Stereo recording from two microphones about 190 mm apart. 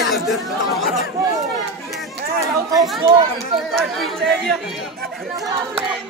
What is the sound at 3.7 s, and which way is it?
Speech, centre (ahead or behind).